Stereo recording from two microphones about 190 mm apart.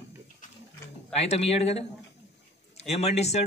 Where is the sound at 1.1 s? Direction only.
35° left (ahead or behind).